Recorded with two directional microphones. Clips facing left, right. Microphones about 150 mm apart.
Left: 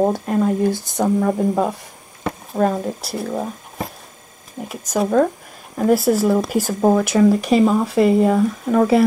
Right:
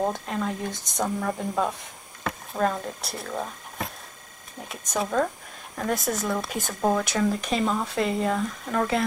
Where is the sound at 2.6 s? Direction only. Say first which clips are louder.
Left 7 dB; 20° left (ahead or behind).